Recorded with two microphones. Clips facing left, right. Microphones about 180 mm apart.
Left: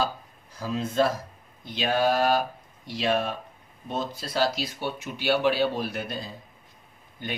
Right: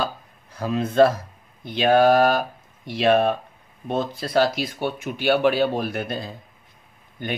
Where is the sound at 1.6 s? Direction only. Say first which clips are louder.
Right 8 dB; 55° right (ahead or behind).